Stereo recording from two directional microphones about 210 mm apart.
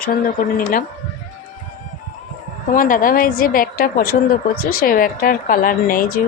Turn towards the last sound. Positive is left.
turn(degrees=40)  # may be behind; listen again after turning